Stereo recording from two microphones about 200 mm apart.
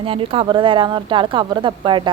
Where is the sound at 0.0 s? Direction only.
25° right (ahead or behind).